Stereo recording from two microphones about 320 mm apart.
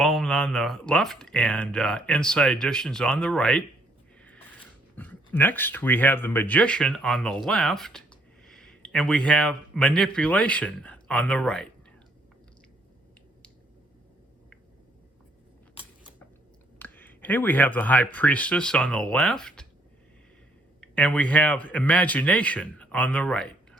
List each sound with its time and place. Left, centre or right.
0.0 s speech: centre
4.9 s a man's voice: centre
16.7 s speech: centre
20.8 s speech: centre